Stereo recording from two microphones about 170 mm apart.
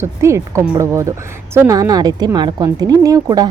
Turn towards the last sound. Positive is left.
turn(degrees=-20)  # may be behind; listen again after turning